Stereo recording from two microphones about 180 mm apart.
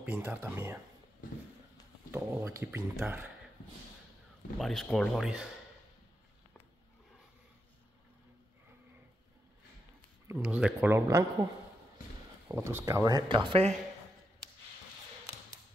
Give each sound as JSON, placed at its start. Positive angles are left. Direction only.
{"t": 0.0, "sound": "speech", "side_deg": -10}
{"t": 2.0, "sound": "speech", "side_deg": -15}
{"t": 4.6, "sound": "speech", "side_deg": 0}
{"t": 10.2, "sound": "speech", "side_deg": -5}
{"t": 12.4, "sound": "speech", "side_deg": -15}